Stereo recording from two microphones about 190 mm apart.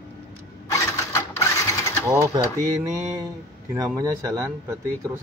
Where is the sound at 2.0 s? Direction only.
15° right (ahead or behind).